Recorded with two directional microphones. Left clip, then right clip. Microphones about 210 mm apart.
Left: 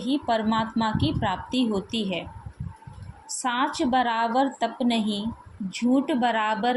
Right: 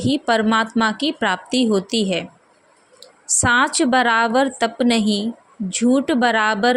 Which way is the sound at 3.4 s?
50° right (ahead or behind).